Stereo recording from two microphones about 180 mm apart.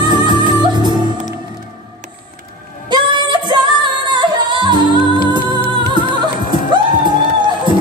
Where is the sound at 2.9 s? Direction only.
25° right (ahead or behind).